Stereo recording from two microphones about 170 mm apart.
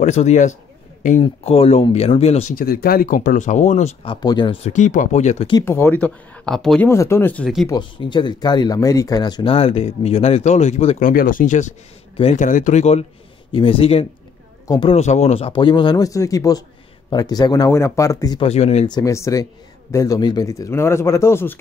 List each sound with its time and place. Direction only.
0.0 s speech: 40° left (ahead or behind)
2.5 s speech: 60° left (ahead or behind); by 3.9 s 45° left (ahead or behind)
4.0 s speech: 25° left (ahead or behind)
4.6 s speech: 45° left (ahead or behind)
5.7 s a man's voice: 10° left (ahead or behind)
6.9 s a man's voice: 15° left (ahead or behind)
7.6 s speech: 25° left (ahead or behind)
11.0 s speech: 55° left (ahead or behind)
12.2 s speech: 35° left (ahead or behind)
12.4 s speech: 45° left (ahead or behind)
13.5 s speech: 30° left (ahead or behind)
15.0 s speech: 40° left (ahead or behind); by 18.4 s 20° left (ahead or behind)
18.4 s speech: 40° left (ahead or behind)
18.9 s a man's voice: 20° left (ahead or behind)